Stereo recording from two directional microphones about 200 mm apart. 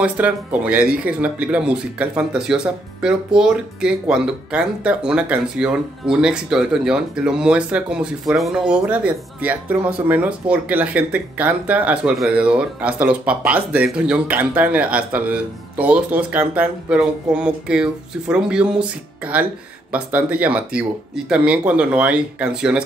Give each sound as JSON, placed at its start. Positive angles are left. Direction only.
{"t": 0.0, "sound": "speech", "side_deg": -5}